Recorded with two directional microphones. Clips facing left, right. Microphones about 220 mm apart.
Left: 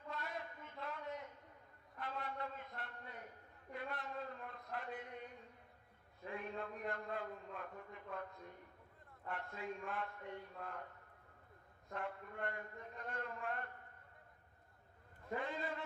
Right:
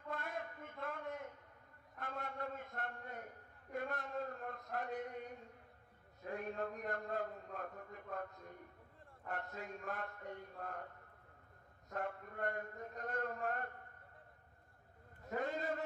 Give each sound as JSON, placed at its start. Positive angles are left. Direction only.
{"t": 0.1, "sound": "a sound", "side_deg": -50}
{"t": 6.2, "sound": "a man's voice", "side_deg": -45}
{"t": 9.3, "sound": "a man's voice", "side_deg": -40}
{"t": 11.9, "sound": "a man's voice", "side_deg": -45}
{"t": 15.3, "sound": "a man's voice", "side_deg": -45}